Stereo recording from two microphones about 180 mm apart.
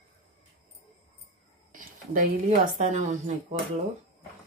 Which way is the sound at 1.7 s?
50° right (ahead or behind).